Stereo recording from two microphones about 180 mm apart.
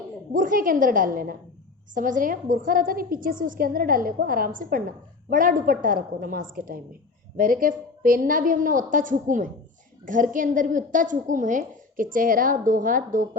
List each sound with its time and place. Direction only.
0.3 s a woman's voice: 50° right (ahead or behind)